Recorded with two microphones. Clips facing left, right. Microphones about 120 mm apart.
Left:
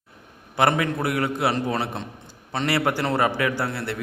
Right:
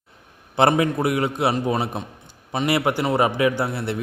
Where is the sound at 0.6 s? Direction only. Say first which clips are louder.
Right 3 dB; 25° right (ahead or behind).